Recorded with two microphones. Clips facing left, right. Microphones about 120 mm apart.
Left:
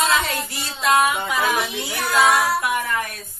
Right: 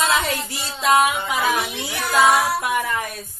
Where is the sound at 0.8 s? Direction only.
25° right (ahead or behind).